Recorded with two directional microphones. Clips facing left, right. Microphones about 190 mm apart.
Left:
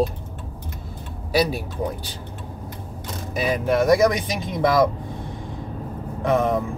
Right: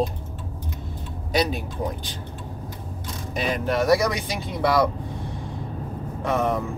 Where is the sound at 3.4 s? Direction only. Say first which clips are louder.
Left 3 dB; 15° left (ahead or behind).